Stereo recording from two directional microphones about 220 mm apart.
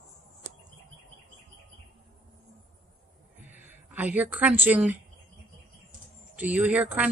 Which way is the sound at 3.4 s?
10° right (ahead or behind).